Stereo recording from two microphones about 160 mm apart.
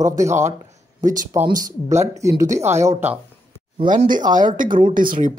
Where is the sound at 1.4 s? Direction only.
55° right (ahead or behind).